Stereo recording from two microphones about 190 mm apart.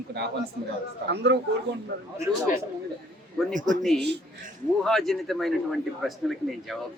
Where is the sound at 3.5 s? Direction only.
40° right (ahead or behind).